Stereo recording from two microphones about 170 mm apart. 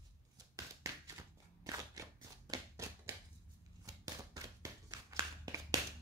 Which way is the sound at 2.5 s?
20° right (ahead or behind).